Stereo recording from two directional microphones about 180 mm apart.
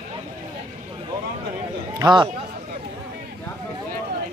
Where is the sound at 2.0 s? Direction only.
25° right (ahead or behind).